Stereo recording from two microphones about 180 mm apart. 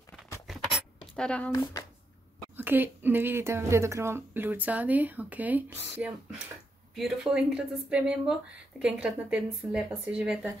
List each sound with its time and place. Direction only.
0.5 s a sound: centre (ahead or behind)
1.5 s speech: 20° left (ahead or behind)
2.5 s speech: 10° right (ahead or behind)